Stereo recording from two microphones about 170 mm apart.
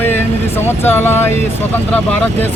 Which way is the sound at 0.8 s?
10° left (ahead or behind).